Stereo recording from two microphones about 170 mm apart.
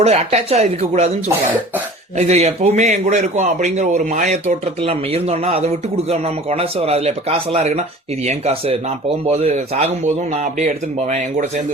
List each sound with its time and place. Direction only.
0.0 s speech: 40° right (ahead or behind)
2.1 s a man's voice: 40° right (ahead or behind)
4.8 s a man's voice: 35° right (ahead or behind)